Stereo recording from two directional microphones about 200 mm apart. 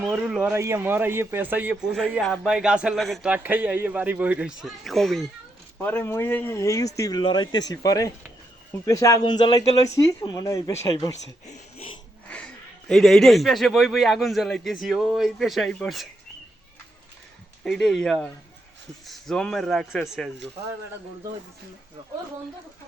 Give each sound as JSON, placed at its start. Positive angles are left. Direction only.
{"t": 0.0, "sound": "a man's voice", "side_deg": -5}
{"t": 11.4, "sound": "speech", "side_deg": 30}
{"t": 12.9, "sound": "a man's voice", "side_deg": 0}
{"t": 17.6, "sound": "a man's voice", "side_deg": 5}